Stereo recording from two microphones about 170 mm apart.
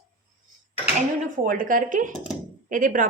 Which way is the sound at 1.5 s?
55° right (ahead or behind).